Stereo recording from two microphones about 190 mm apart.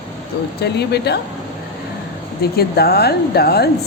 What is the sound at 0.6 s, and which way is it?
Speech, 60° left (ahead or behind).